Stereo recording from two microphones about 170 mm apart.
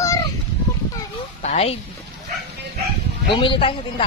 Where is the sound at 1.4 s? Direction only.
40° left (ahead or behind).